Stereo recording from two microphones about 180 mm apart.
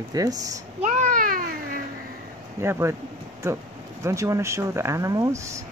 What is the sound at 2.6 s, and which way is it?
Speech, 15° right (ahead or behind).